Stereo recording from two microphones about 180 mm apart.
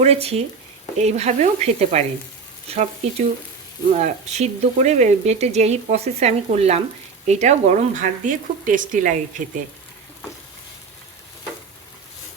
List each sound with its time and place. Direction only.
0.0 s speech: 35° right (ahead or behind)
3.9 s speech: 40° right (ahead or behind)